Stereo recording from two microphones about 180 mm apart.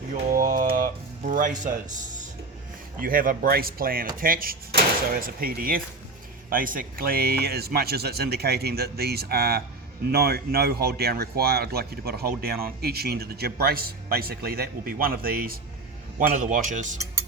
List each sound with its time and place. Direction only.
0.2 s music: 50° right (ahead or behind)
3.0 s speech: 50° right (ahead or behind)